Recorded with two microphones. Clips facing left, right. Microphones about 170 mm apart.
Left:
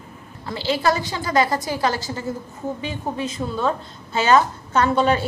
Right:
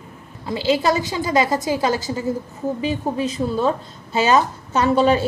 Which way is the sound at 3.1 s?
35° right (ahead or behind).